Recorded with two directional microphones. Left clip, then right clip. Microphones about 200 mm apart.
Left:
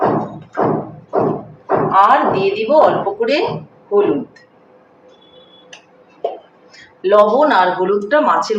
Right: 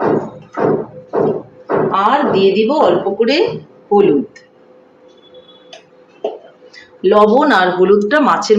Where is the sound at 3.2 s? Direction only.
40° right (ahead or behind).